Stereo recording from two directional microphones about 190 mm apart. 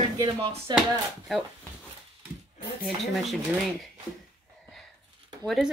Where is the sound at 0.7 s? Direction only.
Centre (ahead or behind).